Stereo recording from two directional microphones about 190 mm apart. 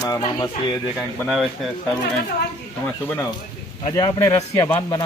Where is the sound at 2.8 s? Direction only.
10° left (ahead or behind).